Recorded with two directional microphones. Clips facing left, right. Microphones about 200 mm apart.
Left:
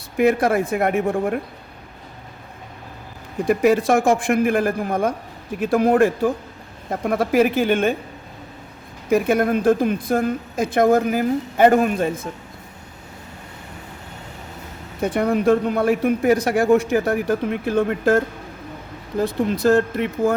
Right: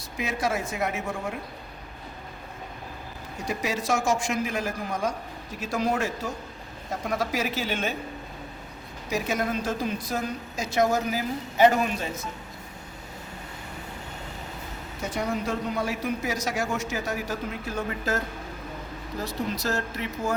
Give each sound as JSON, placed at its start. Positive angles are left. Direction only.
{"t": 0.2, "sound": "speech", "side_deg": 55}
{"t": 3.3, "sound": "speech", "side_deg": 55}
{"t": 9.0, "sound": "a woman's voice", "side_deg": 55}
{"t": 15.0, "sound": "speech", "side_deg": 55}
{"t": 19.2, "sound": "a woman's voice", "side_deg": 55}